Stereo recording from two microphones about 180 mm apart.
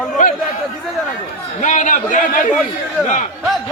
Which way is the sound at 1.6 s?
45° left (ahead or behind).